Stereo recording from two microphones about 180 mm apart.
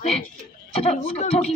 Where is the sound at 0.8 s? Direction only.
35° left (ahead or behind).